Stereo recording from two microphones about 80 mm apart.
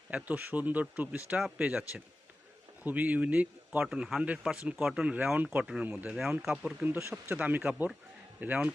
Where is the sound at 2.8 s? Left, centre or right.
Centre.